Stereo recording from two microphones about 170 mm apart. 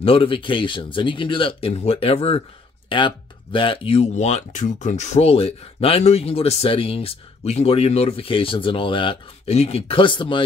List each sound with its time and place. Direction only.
0.0 s speech: 30° left (ahead or behind)